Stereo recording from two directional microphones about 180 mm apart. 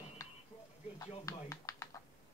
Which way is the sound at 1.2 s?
20° left (ahead or behind).